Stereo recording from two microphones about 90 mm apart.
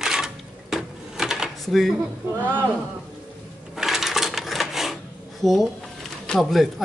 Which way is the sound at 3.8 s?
5° right (ahead or behind).